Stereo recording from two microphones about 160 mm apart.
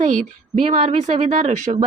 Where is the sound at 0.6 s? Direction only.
40° right (ahead or behind).